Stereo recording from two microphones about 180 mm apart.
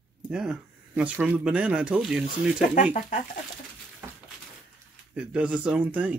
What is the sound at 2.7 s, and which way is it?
Speech, 45° left (ahead or behind).